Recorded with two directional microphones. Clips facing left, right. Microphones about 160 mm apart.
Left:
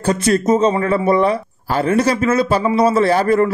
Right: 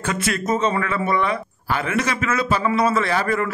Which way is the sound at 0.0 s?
35° left (ahead or behind).